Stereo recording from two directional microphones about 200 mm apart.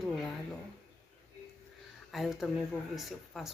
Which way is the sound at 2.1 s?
Centre (ahead or behind).